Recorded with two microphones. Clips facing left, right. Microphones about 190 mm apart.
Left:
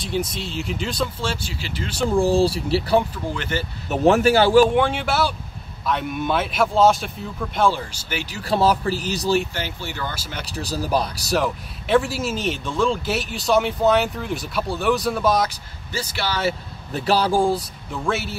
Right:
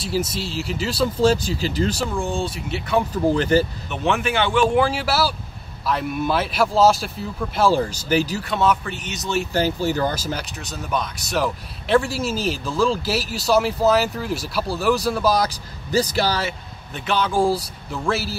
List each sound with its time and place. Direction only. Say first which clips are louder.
0.0 s speech: right 1 dB; centre (ahead or behind)
1.0 s speech: right 9 dB; 40° right (ahead or behind)
2.0 s speech: left 7 dB; 35° left (ahead or behind)
3.2 s speech: right 9 dB; 40° right (ahead or behind)
3.9 s speech: left 7 dB; 40° left (ahead or behind)
4.7 s speech: right 1 dB; centre (ahead or behind)
7.7 s speech: right 10 dB; 40° right (ahead or behind)
8.5 s speech: left 2 dB; 35° left (ahead or behind)
9.5 s speech: right 10 dB; 40° right (ahead or behind)
10.5 s speech: left 4 dB; 35° left (ahead or behind)
11.3 s speech: left 1 dB; centre (ahead or behind)
15.9 s speech: right 7 dB; 40° right (ahead or behind)
16.4 s speech: left 6 dB; 35° left (ahead or behind)
17.4 s speech: right 1 dB; centre (ahead or behind)